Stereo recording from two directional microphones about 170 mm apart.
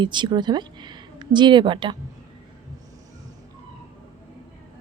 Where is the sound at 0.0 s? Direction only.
25° right (ahead or behind).